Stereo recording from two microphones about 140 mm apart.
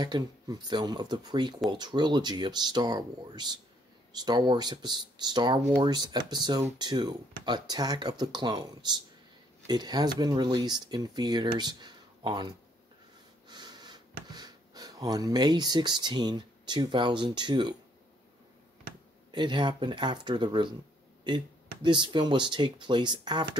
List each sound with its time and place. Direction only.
0.0 s speech: 30° right (ahead or behind)
13.5 s snort: 30° right (ahead or behind)
14.3 s speech: 30° right (ahead or behind)
19.3 s speech: 35° right (ahead or behind)
21.8 s speech: 35° right (ahead or behind)